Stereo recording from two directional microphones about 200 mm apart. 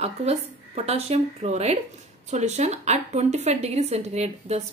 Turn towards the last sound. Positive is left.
turn(degrees=-35)  # may be behind; listen again after turning